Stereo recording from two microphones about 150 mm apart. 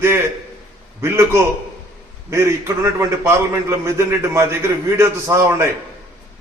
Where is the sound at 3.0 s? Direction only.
15° right (ahead or behind).